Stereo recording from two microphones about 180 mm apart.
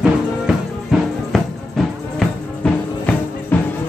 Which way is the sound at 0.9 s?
Centre (ahead or behind).